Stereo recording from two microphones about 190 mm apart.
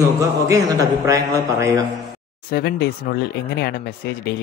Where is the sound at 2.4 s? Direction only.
55° left (ahead or behind).